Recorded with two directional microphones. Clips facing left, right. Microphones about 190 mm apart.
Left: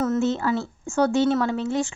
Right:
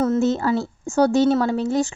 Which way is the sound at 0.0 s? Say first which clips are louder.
Right 3 dB; 35° right (ahead or behind).